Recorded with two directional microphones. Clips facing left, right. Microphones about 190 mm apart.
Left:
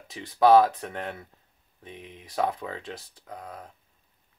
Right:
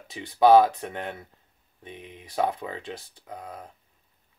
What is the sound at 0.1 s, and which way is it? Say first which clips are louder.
Speech: right 1 dB; centre (ahead or behind).